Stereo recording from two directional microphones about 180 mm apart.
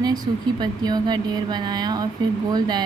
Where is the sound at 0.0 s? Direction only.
20° right (ahead or behind).